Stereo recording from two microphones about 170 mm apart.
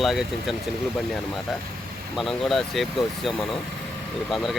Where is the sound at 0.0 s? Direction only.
Centre (ahead or behind).